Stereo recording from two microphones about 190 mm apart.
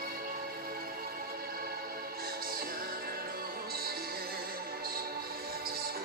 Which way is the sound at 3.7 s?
55° right (ahead or behind).